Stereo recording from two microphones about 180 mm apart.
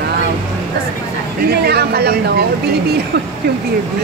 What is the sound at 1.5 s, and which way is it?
Speech, 60° right (ahead or behind).